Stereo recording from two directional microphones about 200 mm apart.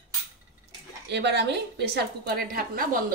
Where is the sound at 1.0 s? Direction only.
55° right (ahead or behind).